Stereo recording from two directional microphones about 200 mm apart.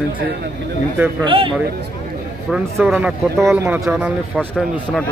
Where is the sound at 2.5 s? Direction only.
5° right (ahead or behind).